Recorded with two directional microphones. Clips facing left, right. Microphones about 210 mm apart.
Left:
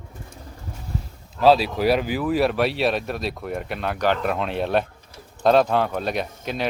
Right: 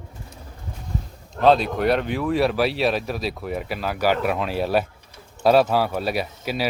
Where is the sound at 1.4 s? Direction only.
5° left (ahead or behind).